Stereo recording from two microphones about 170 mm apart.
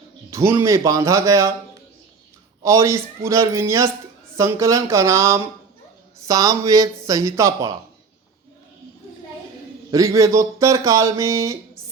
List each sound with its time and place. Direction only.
0.3 s speech: 15° right (ahead or behind)
2.6 s speech: 15° right (ahead or behind)
9.9 s speech: 20° right (ahead or behind)